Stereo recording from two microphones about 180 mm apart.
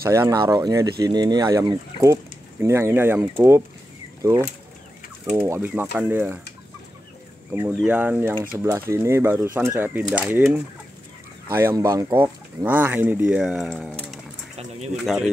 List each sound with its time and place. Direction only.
0.0 s speech: 15° right (ahead or behind)
7.5 s speech: 10° right (ahead or behind)